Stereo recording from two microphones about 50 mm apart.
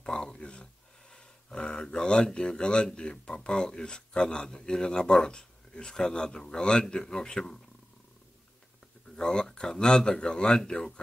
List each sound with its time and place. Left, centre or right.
0.0 s a sound: centre
1.1 s speech: centre
9.1 s speech: centre